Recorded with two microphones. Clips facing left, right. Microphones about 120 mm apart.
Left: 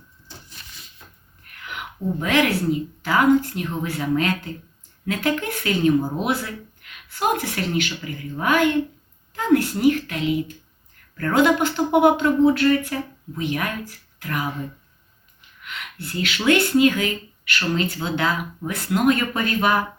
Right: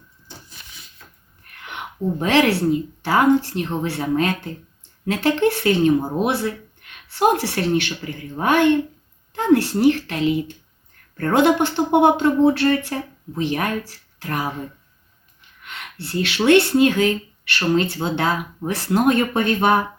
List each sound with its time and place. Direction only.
1.6 s a woman's voice: 30° right (ahead or behind)
11.2 s speech: 25° right (ahead or behind)
12.5 s a woman's voice: 35° right (ahead or behind)
15.6 s a woman's voice: 30° right (ahead or behind)